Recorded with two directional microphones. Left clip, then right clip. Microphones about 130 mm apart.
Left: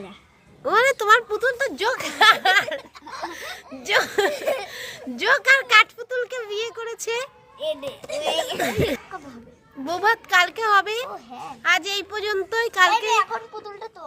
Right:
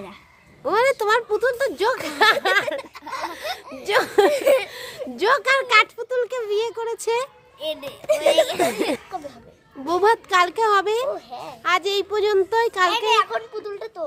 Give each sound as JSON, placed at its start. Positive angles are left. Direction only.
{"t": 0.6, "sound": "speech", "side_deg": 0}
{"t": 3.8, "sound": "speech", "side_deg": -15}
{"t": 4.4, "sound": "a child's voice", "side_deg": -65}
{"t": 4.7, "sound": "speech", "side_deg": -15}
{"t": 13.3, "sound": "a child's voice", "side_deg": -75}